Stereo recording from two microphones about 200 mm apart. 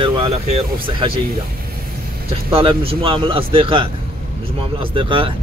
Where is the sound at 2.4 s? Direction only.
25° right (ahead or behind).